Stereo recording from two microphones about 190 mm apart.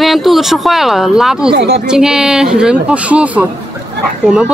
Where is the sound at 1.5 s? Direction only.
60° right (ahead or behind).